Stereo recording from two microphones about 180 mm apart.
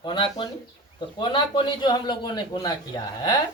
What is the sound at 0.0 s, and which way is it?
A man's voice, 25° left (ahead or behind).